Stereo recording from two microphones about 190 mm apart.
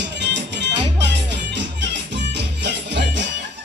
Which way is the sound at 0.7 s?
25° right (ahead or behind).